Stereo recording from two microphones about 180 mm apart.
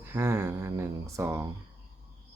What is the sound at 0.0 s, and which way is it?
Speech, 10° right (ahead or behind).